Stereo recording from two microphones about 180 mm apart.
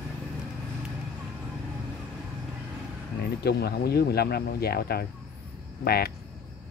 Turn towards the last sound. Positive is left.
turn(degrees=60)  # may be behind; listen again after turning